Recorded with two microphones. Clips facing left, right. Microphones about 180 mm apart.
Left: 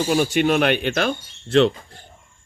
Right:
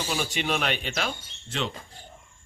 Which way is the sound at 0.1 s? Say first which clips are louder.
Left 10 dB; 50° left (ahead or behind).